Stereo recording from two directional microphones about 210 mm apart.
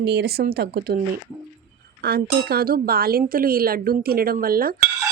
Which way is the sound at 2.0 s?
45° right (ahead or behind).